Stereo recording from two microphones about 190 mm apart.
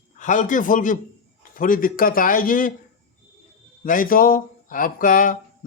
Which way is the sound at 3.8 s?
45° left (ahead or behind).